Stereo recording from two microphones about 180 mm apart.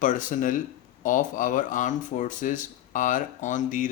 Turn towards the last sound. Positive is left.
turn(degrees=45)  # may be behind; listen again after turning